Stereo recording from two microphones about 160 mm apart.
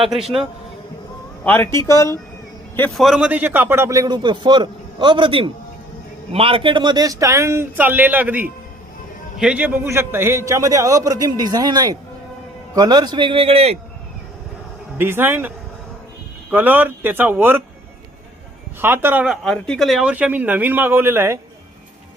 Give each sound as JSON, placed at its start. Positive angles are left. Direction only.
{"t": 0.0, "sound": "a man's voice", "side_deg": 0}
{"t": 1.5, "sound": "speech", "side_deg": 15}
{"t": 2.9, "sound": "a man's voice", "side_deg": 0}
{"t": 14.9, "sound": "speech", "side_deg": -15}
{"t": 18.8, "sound": "speech", "side_deg": -15}
{"t": 19.5, "sound": "speech", "side_deg": 5}